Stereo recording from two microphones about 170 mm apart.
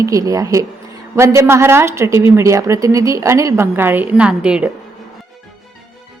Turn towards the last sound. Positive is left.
turn(degrees=-5)  # may be behind; listen again after turning